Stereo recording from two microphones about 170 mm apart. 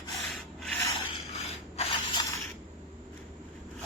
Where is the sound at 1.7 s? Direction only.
35° left (ahead or behind).